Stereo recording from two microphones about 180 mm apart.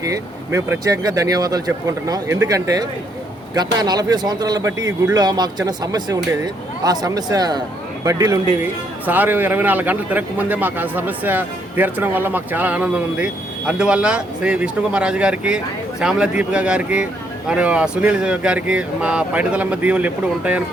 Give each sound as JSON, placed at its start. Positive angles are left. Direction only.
{"t": 0.0, "sound": "speech", "side_deg": -15}